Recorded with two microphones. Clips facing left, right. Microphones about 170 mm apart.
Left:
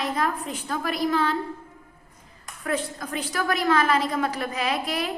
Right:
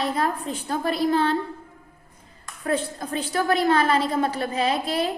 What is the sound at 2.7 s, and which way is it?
A woman's voice, 30° right (ahead or behind).